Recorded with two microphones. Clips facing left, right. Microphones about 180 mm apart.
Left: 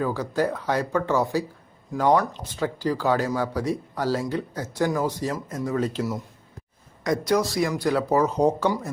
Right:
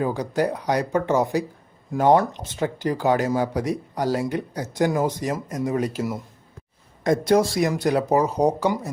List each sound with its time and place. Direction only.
0.0 s speech: 20° right (ahead or behind)
7.0 s speech: 25° right (ahead or behind)